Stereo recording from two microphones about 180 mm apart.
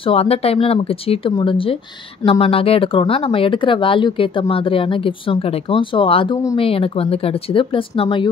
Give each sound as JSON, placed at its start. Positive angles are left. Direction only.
{"t": 0.0, "sound": "speech", "side_deg": 35}